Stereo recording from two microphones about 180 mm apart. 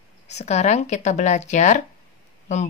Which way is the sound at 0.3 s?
40° left (ahead or behind).